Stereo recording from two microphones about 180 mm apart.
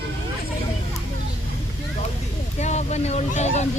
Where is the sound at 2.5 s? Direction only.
40° left (ahead or behind).